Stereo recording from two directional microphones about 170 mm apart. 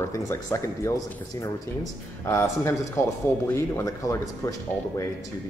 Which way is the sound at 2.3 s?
15° left (ahead or behind).